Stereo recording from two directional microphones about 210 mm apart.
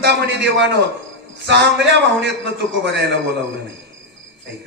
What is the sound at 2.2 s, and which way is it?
A man's voice, 55° right (ahead or behind).